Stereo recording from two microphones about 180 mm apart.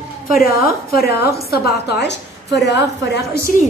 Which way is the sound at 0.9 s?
60° left (ahead or behind).